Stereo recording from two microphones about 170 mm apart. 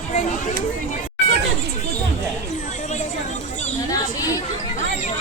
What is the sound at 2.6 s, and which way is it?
Chatter, 45° left (ahead or behind).